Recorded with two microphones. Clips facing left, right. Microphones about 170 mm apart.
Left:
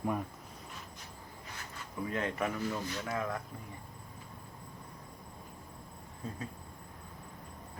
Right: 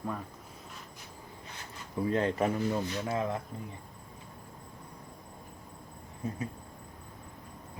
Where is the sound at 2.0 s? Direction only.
35° right (ahead or behind).